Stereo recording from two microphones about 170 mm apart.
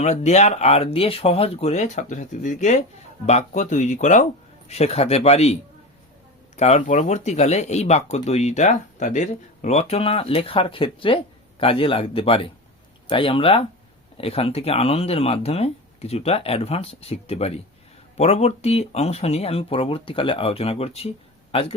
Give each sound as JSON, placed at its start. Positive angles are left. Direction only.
{"t": 0.0, "sound": "speech", "side_deg": 40}
{"t": 6.6, "sound": "a man's voice", "side_deg": 40}